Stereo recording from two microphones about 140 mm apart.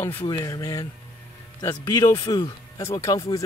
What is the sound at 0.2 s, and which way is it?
Speech, 25° left (ahead or behind).